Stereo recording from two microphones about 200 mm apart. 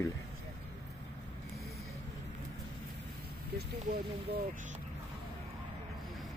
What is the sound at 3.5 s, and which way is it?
Speech, 50° right (ahead or behind).